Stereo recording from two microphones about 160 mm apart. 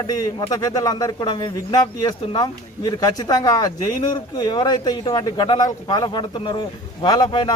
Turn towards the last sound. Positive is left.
turn(degrees=30)  # may be behind; listen again after turning